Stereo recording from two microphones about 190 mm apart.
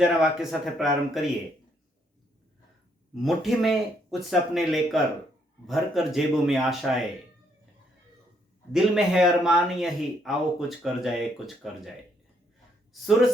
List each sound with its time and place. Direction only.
0.0 s speech: 5° right (ahead or behind)
3.2 s speech: centre (ahead or behind)
8.7 s speech: 5° right (ahead or behind)